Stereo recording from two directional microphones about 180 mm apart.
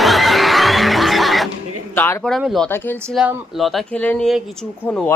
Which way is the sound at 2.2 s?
Centre (ahead or behind).